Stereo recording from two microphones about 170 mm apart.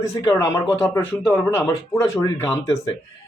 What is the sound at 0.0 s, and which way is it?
Speech, 15° left (ahead or behind).